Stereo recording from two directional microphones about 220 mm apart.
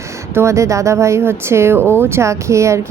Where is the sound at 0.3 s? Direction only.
15° right (ahead or behind).